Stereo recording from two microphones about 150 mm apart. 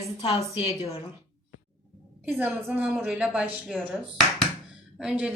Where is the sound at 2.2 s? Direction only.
10° right (ahead or behind).